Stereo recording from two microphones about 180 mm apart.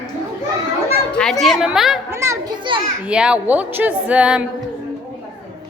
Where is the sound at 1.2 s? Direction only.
Centre (ahead or behind).